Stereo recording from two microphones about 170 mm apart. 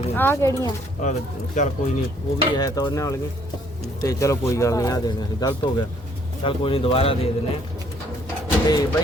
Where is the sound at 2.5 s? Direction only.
25° left (ahead or behind).